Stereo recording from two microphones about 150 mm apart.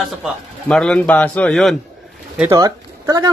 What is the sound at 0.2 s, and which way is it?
A man's voice, 5° left (ahead or behind).